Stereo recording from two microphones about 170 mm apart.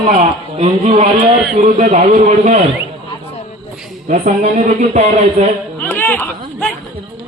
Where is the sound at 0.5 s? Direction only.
35° right (ahead or behind).